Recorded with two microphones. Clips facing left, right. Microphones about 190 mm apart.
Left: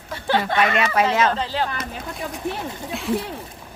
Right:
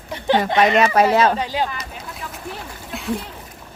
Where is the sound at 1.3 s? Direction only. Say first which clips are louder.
Right 2 dB; 15° right (ahead or behind).